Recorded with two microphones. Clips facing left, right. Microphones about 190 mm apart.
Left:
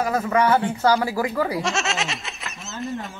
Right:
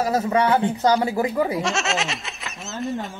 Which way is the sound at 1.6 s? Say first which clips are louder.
Right 1 dB; centre (ahead or behind).